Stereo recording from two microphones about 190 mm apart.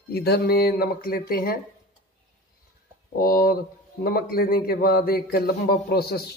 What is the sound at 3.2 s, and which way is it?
A man's voice, 50° left (ahead or behind).